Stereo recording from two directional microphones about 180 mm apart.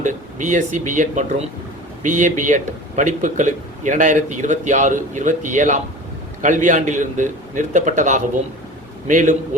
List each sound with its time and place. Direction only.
0.0 s speech: 45° right (ahead or behind)